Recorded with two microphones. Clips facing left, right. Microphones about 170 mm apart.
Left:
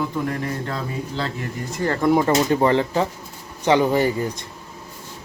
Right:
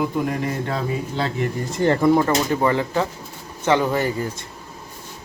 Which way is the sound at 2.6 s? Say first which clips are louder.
Left 2 dB; 25° left (ahead or behind).